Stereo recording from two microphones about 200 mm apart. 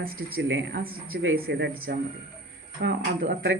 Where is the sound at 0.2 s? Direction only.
90° right; by 0.8 s 70° right (ahead or behind).